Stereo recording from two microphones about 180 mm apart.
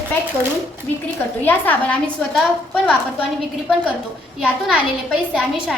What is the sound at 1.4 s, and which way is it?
A woman's voice, 10° left (ahead or behind).